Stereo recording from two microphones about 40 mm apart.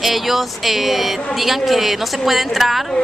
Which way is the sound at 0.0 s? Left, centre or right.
Centre.